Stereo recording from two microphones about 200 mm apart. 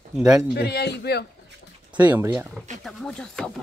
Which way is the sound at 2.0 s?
10° right (ahead or behind).